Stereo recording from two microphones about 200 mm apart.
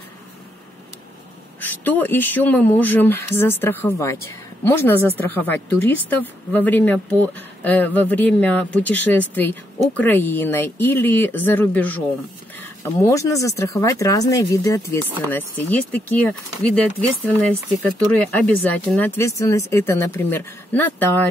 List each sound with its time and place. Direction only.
1.7 s speech: 10° left (ahead or behind)